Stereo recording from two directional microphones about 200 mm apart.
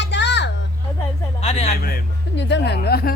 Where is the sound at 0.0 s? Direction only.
60° left (ahead or behind).